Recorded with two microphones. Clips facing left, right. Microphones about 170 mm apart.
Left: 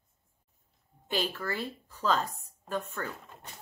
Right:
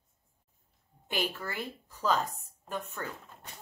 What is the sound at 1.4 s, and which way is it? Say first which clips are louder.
A woman's voice: left 3 dB; 15° right (ahead or behind).